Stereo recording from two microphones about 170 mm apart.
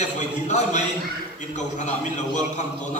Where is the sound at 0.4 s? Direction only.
45° left (ahead or behind).